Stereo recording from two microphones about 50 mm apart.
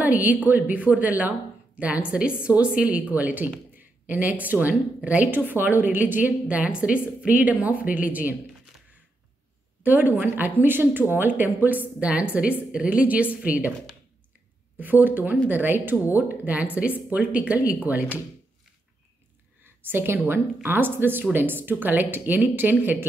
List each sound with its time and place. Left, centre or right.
0.0 s a woman's voice: right
9.8 s speech: right
12.1 s a woman's voice: right
14.8 s speech: right
19.6 s a sound: right
20.2 s speech: right